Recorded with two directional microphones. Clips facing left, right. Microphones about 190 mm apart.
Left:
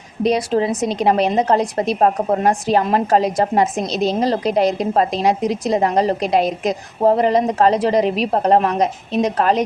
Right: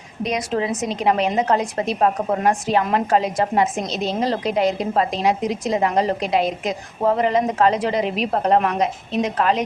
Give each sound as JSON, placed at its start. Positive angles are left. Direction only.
{"t": 0.2, "sound": "a woman's voice", "side_deg": 35}